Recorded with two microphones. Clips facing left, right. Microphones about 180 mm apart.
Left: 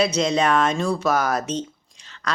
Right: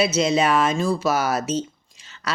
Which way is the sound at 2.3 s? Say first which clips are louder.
Left 1 dB; 5° right (ahead or behind).